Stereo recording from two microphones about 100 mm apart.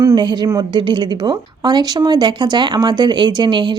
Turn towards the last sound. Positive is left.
turn(degrees=-50)  # may be behind; listen again after turning